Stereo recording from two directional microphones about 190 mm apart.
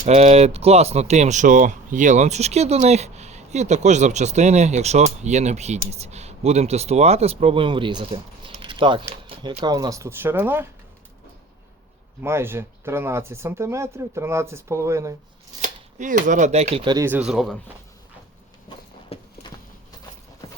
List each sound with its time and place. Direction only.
0.0 s speech: 35° right (ahead or behind); by 10.7 s 10° right (ahead or behind)
12.2 s speech: 15° right (ahead or behind)
15.6 s speech: 40° right (ahead or behind); by 17.1 s 25° right (ahead or behind)
17.1 s speech: 5° right (ahead or behind)
19.1 s clip-clop: 30° left (ahead or behind)